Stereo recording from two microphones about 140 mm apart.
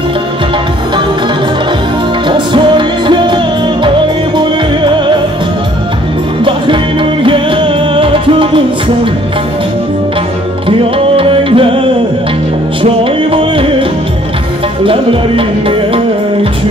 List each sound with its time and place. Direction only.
2.2 s music: 35° right (ahead or behind)
4.4 s music: 35° right (ahead or behind)
7.2 s music: 35° right (ahead or behind)
10.7 s music: 40° right (ahead or behind)
12.8 s music: 40° right (ahead or behind)